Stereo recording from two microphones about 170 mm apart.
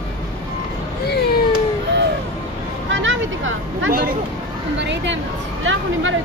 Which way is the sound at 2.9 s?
90° right.